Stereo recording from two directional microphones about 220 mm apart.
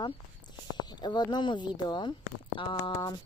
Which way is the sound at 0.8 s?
20° left (ahead or behind).